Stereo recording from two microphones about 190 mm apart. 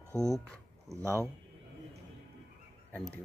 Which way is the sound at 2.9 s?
5° left (ahead or behind).